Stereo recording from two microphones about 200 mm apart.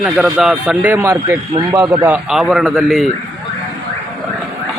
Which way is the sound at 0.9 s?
15° right (ahead or behind).